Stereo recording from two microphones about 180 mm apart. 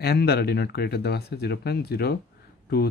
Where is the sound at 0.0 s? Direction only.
60° left (ahead or behind).